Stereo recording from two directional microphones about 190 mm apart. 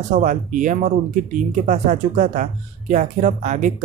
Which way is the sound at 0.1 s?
45° right (ahead or behind).